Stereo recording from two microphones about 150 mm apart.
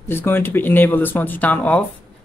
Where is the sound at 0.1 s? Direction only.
15° left (ahead or behind).